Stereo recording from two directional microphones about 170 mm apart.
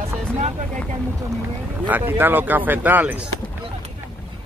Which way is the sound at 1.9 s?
10° right (ahead or behind).